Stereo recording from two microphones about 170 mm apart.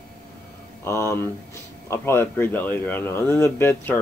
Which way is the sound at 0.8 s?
15° left (ahead or behind).